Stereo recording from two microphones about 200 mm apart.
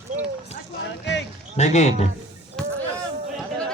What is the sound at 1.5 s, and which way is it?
Speech, 35° left (ahead or behind).